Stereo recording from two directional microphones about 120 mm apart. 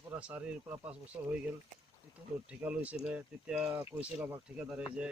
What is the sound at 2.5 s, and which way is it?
Speech, 10° right (ahead or behind).